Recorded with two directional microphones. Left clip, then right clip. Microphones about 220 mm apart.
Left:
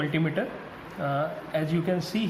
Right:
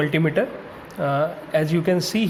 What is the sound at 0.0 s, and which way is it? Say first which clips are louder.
Speech: right 7 dB; 45° right (ahead or behind).